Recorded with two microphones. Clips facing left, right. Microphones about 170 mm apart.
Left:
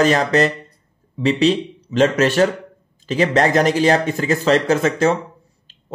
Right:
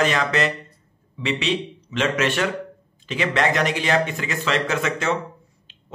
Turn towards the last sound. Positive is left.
turn(degrees=40)  # may be behind; listen again after turning